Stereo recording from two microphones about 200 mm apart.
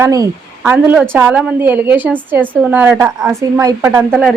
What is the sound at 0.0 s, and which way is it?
Speech, 15° right (ahead or behind).